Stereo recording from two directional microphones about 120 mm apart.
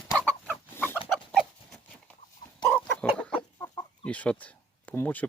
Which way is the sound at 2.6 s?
10° left (ahead or behind).